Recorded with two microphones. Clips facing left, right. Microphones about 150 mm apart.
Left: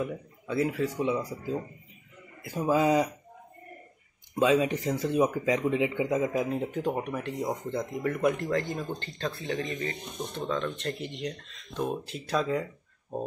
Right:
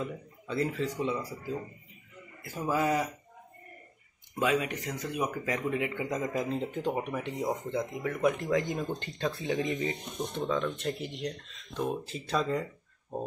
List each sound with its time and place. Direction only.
0.0 s speech: 10° left (ahead or behind)
4.4 s speech: 25° left (ahead or behind)
5.4 s speech: 20° left (ahead or behind)
6.0 s speech: 5° left (ahead or behind)